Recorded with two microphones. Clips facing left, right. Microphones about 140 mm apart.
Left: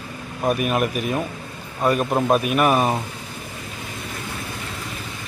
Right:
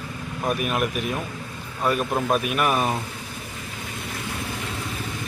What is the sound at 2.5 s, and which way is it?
Speech, 40° left (ahead or behind).